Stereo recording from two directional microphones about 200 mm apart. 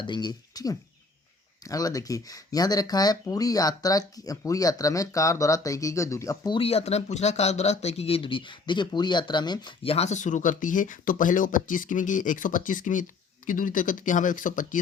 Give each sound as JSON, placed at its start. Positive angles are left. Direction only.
{"t": 0.0, "sound": "speech", "side_deg": 20}